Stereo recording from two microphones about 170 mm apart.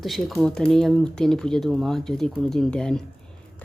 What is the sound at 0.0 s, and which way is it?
Speech, centre (ahead or behind).